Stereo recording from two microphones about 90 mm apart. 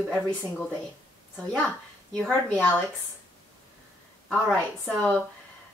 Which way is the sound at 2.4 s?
15° left (ahead or behind).